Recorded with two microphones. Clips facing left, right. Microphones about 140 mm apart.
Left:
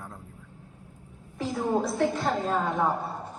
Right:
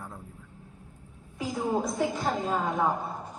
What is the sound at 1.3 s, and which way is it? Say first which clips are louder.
A woman's voice: left 2 dB; centre (ahead or behind).